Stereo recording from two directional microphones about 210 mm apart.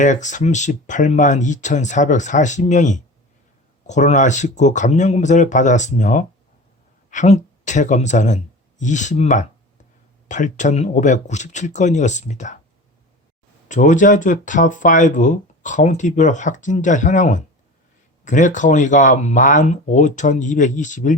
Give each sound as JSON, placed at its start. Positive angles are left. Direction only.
{"t": 0.0, "sound": "speech", "side_deg": 35}
{"t": 13.7, "sound": "speech", "side_deg": 35}